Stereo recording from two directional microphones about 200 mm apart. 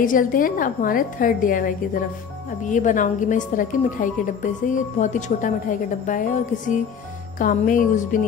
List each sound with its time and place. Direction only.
0.0 s a woman's voice: 40° left (ahead or behind)
7.3 s a woman's voice: 40° left (ahead or behind)